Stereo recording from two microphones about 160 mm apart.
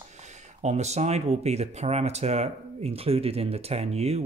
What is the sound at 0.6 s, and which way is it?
Speech, 45° right (ahead or behind).